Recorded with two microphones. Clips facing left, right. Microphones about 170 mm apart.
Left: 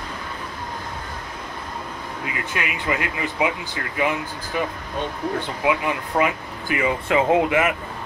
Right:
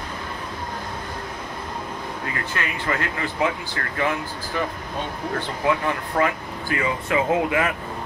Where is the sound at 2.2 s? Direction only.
15° left (ahead or behind).